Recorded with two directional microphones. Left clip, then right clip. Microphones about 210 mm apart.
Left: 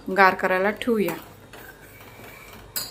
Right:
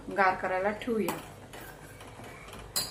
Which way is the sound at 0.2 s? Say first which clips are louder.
Left 8 dB; 50° left (ahead or behind).